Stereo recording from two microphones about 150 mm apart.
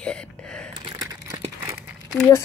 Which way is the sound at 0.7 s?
25° right (ahead or behind).